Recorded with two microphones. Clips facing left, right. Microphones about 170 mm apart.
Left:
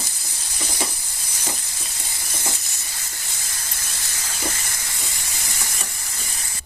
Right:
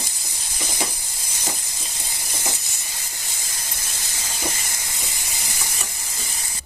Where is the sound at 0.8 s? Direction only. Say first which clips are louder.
Even; 20° right (ahead or behind).